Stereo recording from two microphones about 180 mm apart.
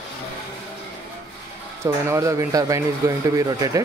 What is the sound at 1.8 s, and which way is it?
Speech, 15° right (ahead or behind).